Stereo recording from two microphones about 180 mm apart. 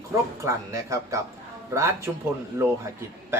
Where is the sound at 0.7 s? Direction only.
15° right (ahead or behind).